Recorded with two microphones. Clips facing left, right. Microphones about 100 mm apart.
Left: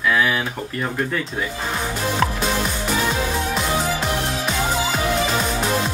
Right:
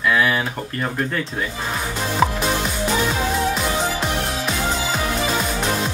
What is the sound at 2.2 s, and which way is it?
Music, 10° right (ahead or behind).